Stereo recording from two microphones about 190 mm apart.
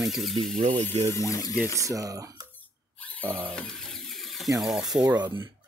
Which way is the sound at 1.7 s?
15° right (ahead or behind).